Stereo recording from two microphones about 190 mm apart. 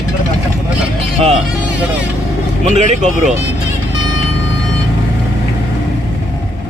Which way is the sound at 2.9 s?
40° right (ahead or behind).